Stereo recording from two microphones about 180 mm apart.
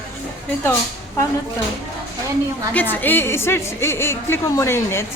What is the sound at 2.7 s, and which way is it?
A woman's voice, 10° left (ahead or behind).